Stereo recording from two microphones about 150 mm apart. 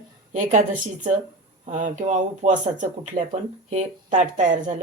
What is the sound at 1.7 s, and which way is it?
Speech, 55° right (ahead or behind).